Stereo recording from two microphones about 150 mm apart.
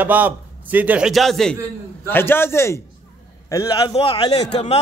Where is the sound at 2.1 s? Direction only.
15° left (ahead or behind).